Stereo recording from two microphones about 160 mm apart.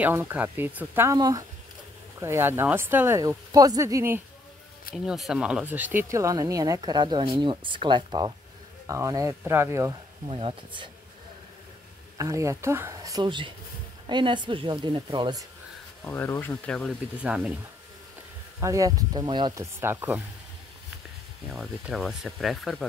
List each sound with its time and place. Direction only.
0.0 s speech: 10° right (ahead or behind)
4.9 s speech: centre (ahead or behind); by 10.3 s 20° right (ahead or behind)
10.3 s speech: 30° right (ahead or behind)
12.2 s speech: 20° right (ahead or behind)
16.0 s speech: 15° left (ahead or behind)
17.2 s speech: 5° right (ahead or behind)
18.6 s speech: 20° right (ahead or behind)
21.5 s speech: centre (ahead or behind)